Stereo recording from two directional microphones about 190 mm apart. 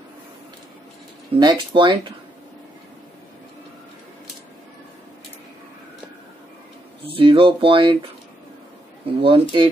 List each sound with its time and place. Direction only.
1.4 s speech: 25° right (ahead or behind)
7.1 s speech: 25° right (ahead or behind)
9.2 s speech: 25° right (ahead or behind)